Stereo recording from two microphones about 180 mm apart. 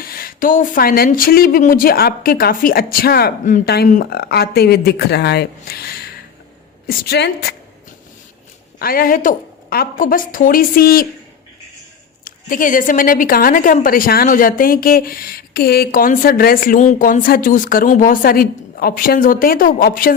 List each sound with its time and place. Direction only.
0.0 s a woman's voice: 55° left (ahead or behind)
8.8 s a woman's voice: 55° left (ahead or behind)
12.2 s a woman's voice: 50° left (ahead or behind)